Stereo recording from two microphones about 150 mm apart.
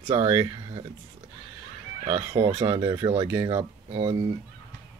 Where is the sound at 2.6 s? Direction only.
25° right (ahead or behind).